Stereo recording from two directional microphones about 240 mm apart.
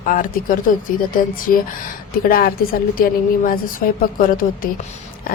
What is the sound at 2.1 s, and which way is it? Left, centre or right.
A woman's voice, left.